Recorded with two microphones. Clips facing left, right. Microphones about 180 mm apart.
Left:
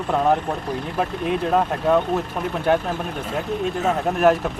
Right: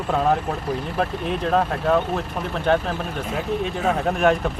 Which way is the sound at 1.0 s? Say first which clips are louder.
Left 3 dB; 5° left (ahead or behind).